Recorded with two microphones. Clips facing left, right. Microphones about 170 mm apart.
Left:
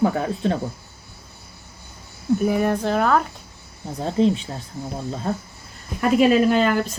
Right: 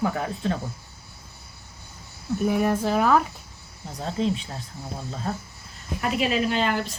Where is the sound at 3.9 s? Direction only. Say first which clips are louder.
Left 7 dB; 35° left (ahead or behind).